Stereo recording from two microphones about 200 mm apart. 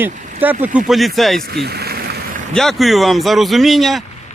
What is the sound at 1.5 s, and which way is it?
Vehicle, 55° right (ahead or behind).